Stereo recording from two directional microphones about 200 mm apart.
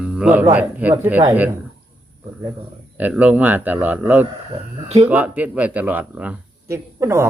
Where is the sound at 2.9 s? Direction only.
10° right (ahead or behind).